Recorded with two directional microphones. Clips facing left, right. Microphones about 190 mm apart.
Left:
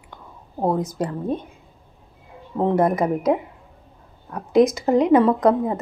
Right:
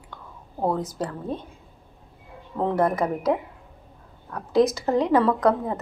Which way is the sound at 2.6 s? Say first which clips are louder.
Left 3 dB; 20° left (ahead or behind).